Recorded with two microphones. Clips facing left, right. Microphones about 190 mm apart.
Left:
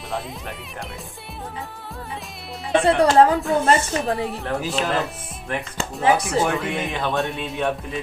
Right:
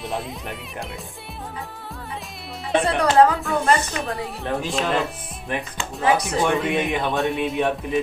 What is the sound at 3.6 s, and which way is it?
Speech, 30° left (ahead or behind).